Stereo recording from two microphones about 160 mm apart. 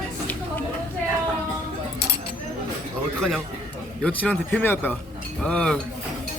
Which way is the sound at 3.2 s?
Centre (ahead or behind).